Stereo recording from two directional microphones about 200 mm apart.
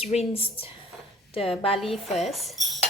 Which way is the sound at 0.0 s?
30° left (ahead or behind).